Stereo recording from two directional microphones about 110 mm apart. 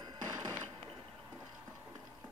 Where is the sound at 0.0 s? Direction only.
40° right (ahead or behind).